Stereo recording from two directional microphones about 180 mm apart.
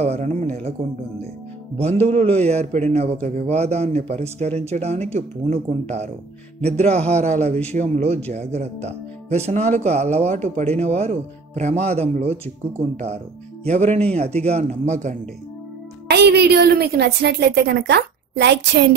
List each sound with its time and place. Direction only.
0.0 s a man's voice: 35° right (ahead or behind)
1.8 s a man's voice: 35° right (ahead or behind)
13.7 s a man's voice: 40° right (ahead or behind)
16.1 s a woman's voice: 65° right (ahead or behind)